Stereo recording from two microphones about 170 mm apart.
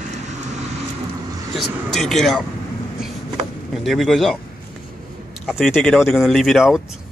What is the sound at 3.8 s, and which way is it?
Speech, centre (ahead or behind).